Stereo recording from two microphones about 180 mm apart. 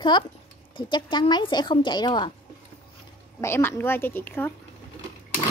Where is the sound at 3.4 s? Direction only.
15° left (ahead or behind).